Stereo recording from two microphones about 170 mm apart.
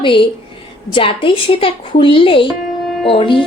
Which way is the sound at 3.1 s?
30° left (ahead or behind).